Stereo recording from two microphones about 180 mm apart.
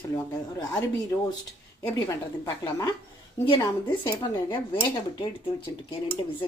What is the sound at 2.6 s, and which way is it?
Speech, 20° left (ahead or behind).